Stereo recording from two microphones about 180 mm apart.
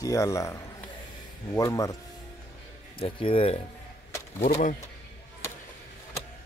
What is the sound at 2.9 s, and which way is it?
Speech, 30° left (ahead or behind).